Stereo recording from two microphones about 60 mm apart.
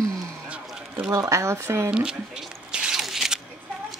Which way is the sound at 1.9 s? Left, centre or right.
Centre.